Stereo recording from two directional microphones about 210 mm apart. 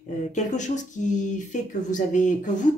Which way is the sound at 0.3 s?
35° left (ahead or behind).